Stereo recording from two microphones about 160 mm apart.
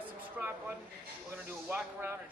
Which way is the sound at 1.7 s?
15° right (ahead or behind).